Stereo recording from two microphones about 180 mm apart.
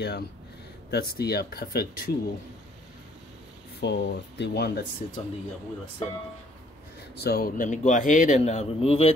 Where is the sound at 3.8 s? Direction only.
70° left (ahead or behind).